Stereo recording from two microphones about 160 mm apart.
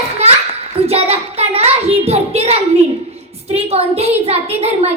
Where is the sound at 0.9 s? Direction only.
40° right (ahead or behind).